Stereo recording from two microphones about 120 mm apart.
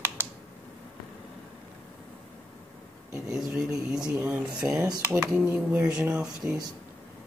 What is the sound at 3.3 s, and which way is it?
Speech, 5° right (ahead or behind).